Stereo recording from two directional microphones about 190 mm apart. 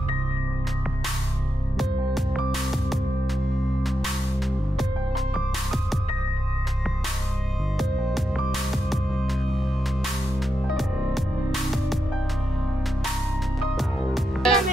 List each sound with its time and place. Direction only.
1.8 s music: centre (ahead or behind)
4.7 s music: centre (ahead or behind)
7.7 s music: centre (ahead or behind)
10.7 s music: centre (ahead or behind)
13.6 s music: centre (ahead or behind)